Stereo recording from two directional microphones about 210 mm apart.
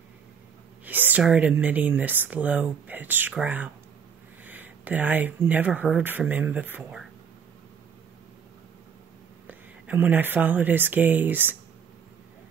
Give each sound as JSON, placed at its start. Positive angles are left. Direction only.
{"t": 0.8, "sound": "speech", "side_deg": -10}
{"t": 9.5, "sound": "speech", "side_deg": -10}